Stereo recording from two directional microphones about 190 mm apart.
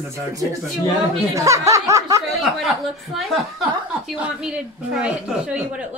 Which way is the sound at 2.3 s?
Centre (ahead or behind).